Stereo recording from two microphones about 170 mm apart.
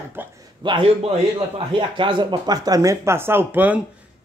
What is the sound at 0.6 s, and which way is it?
A man's voice, 30° right (ahead or behind).